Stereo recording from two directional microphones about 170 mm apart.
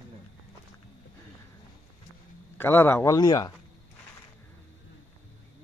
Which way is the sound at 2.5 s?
15° left (ahead or behind).